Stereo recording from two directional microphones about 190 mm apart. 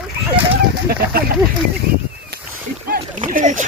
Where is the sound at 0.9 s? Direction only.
55° right (ahead or behind).